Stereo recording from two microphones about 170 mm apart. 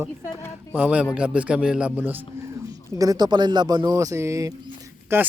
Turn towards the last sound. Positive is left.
turn(degrees=-15)  # may be behind; listen again after turning